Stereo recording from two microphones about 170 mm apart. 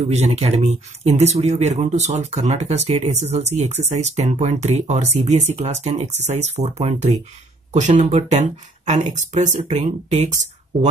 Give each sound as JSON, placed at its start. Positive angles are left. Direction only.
{"t": 0.1, "sound": "speech", "side_deg": -40}